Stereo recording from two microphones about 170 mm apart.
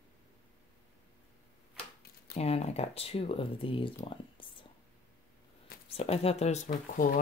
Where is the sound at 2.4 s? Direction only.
35° left (ahead or behind).